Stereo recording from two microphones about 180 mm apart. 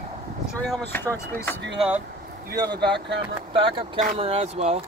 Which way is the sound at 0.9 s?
10° left (ahead or behind).